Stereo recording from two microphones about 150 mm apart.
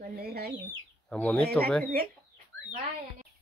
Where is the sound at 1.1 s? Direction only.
10° left (ahead or behind).